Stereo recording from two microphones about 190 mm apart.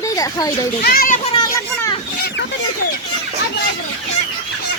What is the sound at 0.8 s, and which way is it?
Speech, 55° left (ahead or behind).